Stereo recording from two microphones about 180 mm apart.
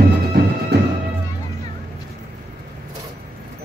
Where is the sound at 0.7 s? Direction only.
65° right (ahead or behind).